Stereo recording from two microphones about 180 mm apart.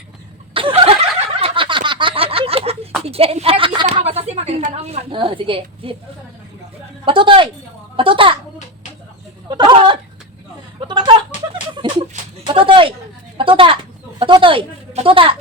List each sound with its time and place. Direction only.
0.5 s a sound: 30° right (ahead or behind)
3.0 s speech: 35° right (ahead or behind)
7.0 s speech: 30° right (ahead or behind)
9.5 s speech: 25° right (ahead or behind)
10.8 s a sound: 25° right (ahead or behind)
12.5 s a woman's voice: 30° right (ahead or behind)